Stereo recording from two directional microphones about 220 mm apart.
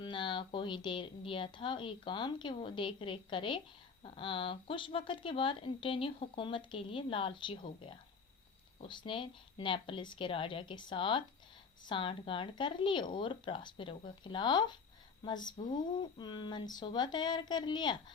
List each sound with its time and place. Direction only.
0.0 s speech: 20° left (ahead or behind)